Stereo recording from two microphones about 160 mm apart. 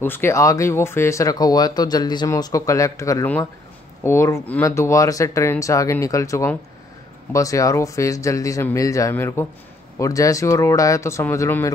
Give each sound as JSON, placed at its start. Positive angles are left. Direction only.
{"t": 0.0, "sound": "speech", "side_deg": 15}